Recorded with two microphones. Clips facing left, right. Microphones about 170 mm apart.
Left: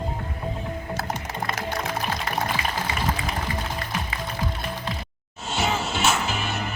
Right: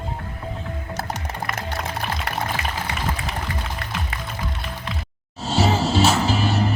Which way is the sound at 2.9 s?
70° right (ahead or behind).